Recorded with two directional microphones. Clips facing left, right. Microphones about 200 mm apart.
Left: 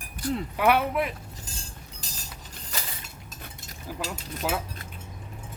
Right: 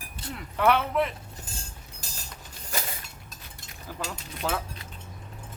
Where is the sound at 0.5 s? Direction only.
10° left (ahead or behind).